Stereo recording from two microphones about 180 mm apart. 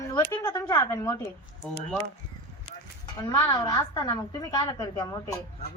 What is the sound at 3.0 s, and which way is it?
A woman's voice, 20° left (ahead or behind).